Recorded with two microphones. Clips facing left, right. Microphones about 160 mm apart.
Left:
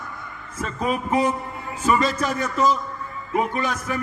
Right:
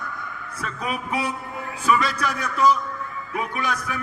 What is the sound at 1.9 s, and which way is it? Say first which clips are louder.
Speech: left 2 dB; 25° left (ahead or behind).